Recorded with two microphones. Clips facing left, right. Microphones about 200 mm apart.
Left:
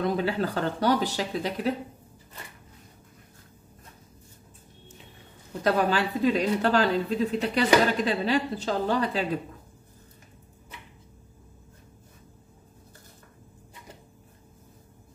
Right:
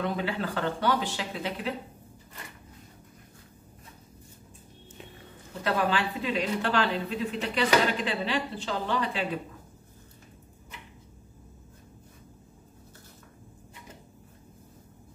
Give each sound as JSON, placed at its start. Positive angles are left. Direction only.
{"t": 0.0, "sound": "speech", "side_deg": 40}
{"t": 5.6, "sound": "speech", "side_deg": 40}